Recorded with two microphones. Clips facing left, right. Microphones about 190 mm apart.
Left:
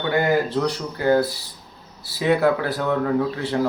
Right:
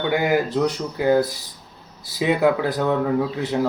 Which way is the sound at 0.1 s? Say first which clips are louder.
Left 2 dB; 10° right (ahead or behind).